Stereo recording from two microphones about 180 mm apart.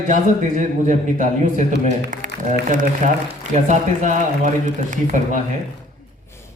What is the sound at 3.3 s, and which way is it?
Speech, 40° right (ahead or behind).